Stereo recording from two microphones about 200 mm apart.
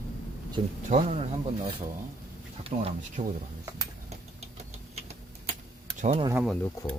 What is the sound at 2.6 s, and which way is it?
Speech, 30° right (ahead or behind).